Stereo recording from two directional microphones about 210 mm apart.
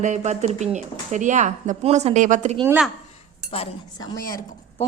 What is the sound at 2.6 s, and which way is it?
Speech, 5° right (ahead or behind).